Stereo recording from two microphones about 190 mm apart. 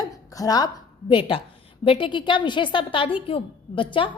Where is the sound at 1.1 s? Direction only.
25° left (ahead or behind).